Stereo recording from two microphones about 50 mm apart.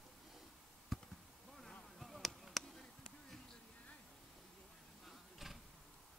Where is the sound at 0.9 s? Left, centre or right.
Centre.